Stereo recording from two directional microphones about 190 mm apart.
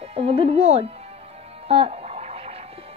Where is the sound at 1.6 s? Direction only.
30° right (ahead or behind).